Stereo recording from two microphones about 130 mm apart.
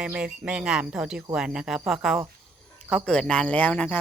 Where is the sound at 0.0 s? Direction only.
10° right (ahead or behind); by 4.0 s 10° left (ahead or behind).